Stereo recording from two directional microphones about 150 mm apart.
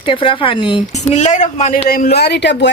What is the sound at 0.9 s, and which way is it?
Speech, 50° left (ahead or behind).